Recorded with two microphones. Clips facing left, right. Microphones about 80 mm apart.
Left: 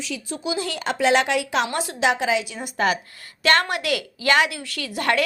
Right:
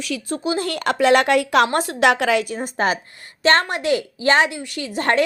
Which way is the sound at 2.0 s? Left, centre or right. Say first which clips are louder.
Right 4 dB; right.